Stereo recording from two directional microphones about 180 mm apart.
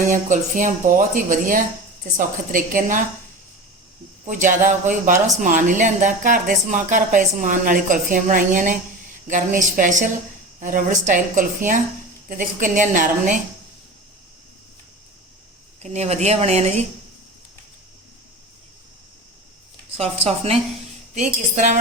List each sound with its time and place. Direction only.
0.1 s a woman's voice: 45° right (ahead or behind)
4.3 s a woman's voice: 45° right (ahead or behind)
15.8 s speech: 40° right (ahead or behind)
20.2 s a woman's voice: 35° right (ahead or behind)